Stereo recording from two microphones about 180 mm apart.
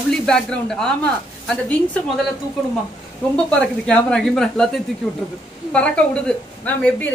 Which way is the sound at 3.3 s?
5° left (ahead or behind).